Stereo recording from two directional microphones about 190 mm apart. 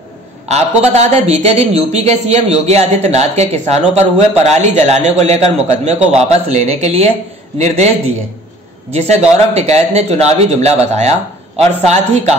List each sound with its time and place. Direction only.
0.8 s speech: 35° right (ahead or behind)